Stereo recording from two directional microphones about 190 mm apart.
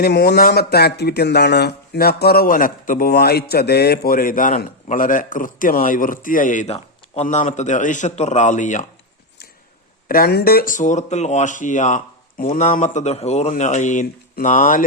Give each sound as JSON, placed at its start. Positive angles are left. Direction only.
{"t": 0.0, "sound": "speech", "side_deg": 55}
{"t": 10.1, "sound": "speech", "side_deg": 50}